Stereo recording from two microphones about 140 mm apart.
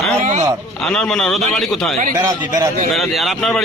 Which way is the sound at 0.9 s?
5° left (ahead or behind).